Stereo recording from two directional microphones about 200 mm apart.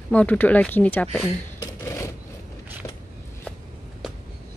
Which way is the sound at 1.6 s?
15° left (ahead or behind).